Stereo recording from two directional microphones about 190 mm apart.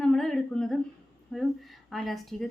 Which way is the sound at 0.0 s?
Centre (ahead or behind).